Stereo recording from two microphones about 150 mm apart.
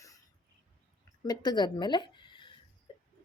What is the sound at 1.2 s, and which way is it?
A woman's voice, 25° left (ahead or behind).